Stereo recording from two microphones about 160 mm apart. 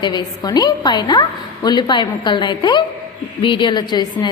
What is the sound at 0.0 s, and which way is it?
A woman's voice, 25° left (ahead or behind).